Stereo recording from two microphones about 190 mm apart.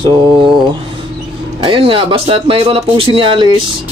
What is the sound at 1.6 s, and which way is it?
Speech, 30° right (ahead or behind).